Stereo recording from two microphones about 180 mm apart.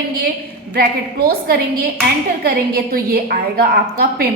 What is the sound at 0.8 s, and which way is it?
A woman's voice, 55° right (ahead or behind).